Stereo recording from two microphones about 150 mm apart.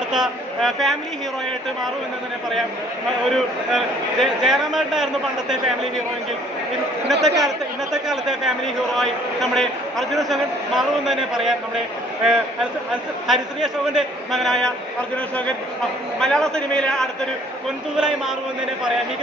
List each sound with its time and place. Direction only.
0.1 s speech: centre (ahead or behind)
3.3 s speech: centre (ahead or behind)
7.1 s speech: centre (ahead or behind)
13.3 s speech: centre (ahead or behind)
16.2 s speech: 5° left (ahead or behind)